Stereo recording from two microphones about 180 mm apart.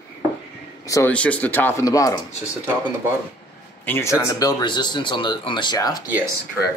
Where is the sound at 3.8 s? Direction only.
15° left (ahead or behind).